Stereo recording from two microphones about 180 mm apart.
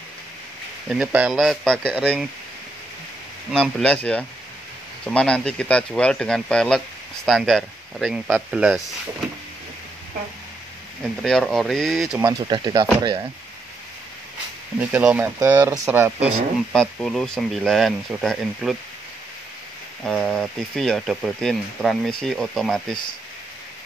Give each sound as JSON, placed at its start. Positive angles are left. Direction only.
{"t": 0.8, "sound": "speech", "side_deg": -5}
{"t": 3.5, "sound": "speech", "side_deg": 5}
{"t": 11.0, "sound": "speech", "side_deg": 0}
{"t": 12.2, "sound": "speech", "side_deg": -20}
{"t": 14.8, "sound": "speech", "side_deg": -10}
{"t": 15.3, "sound": "speech", "side_deg": -20}
{"t": 16.7, "sound": "speech", "side_deg": 5}
{"t": 20.0, "sound": "speech", "side_deg": 5}